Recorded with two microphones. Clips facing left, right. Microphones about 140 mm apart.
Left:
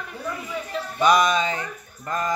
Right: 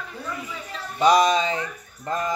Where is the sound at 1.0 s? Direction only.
30° right (ahead or behind).